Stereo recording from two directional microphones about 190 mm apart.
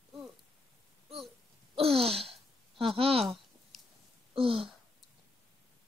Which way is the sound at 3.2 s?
Centre (ahead or behind).